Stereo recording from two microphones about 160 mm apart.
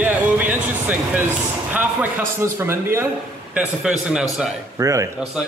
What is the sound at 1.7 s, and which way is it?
Speech, 10° right (ahead or behind).